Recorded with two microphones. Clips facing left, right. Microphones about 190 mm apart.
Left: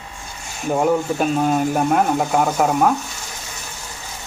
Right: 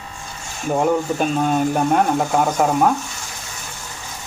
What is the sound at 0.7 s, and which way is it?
Speech, centre (ahead or behind).